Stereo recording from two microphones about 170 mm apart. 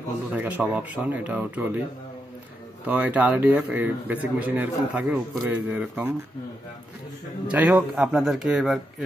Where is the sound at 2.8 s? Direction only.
10° right (ahead or behind).